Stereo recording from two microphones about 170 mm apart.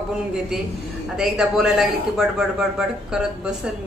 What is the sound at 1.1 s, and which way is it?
A woman's voice, 5° right (ahead or behind).